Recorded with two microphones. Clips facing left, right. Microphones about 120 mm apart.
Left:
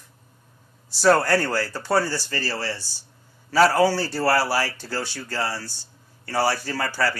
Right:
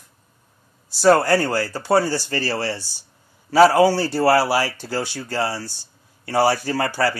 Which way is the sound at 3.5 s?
20° right (ahead or behind).